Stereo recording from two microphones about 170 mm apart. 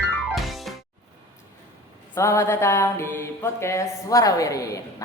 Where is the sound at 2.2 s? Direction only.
15° left (ahead or behind).